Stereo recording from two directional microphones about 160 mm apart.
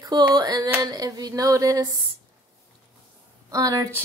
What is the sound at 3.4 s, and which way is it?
Speech, 20° right (ahead or behind).